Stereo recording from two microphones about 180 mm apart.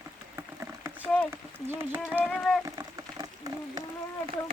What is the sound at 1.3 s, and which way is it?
Speech, 15° right (ahead or behind).